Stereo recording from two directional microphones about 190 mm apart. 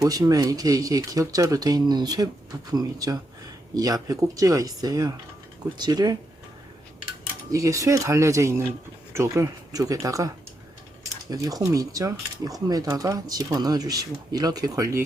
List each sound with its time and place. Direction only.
0.0 s speech: 20° right (ahead or behind)
7.5 s speech: 15° right (ahead or behind)